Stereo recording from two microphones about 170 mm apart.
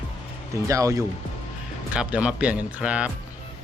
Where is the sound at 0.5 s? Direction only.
20° right (ahead or behind).